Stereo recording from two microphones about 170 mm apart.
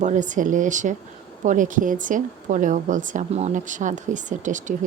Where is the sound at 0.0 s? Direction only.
45° right (ahead or behind).